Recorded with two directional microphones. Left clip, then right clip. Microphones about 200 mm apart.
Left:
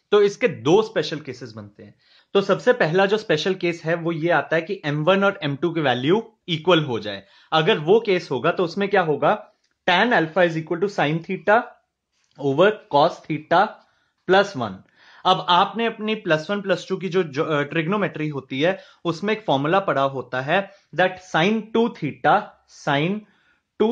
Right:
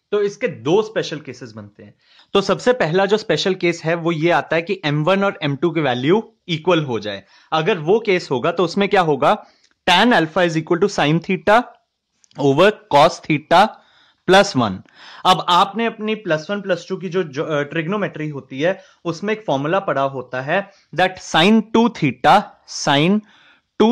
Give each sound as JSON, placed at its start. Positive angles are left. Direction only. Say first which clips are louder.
{"t": 0.1, "sound": "speech", "louder": "left 2 dB", "side_deg": 15}
{"t": 2.3, "sound": "speech", "louder": "right 2 dB", "side_deg": -40}
{"t": 21.2, "sound": "speech", "louder": "right 6 dB", "side_deg": -40}